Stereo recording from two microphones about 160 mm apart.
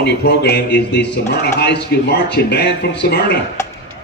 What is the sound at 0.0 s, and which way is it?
Speech, 90° left.